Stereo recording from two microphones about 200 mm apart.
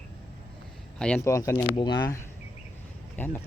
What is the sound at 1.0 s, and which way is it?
Speech, 10° left (ahead or behind).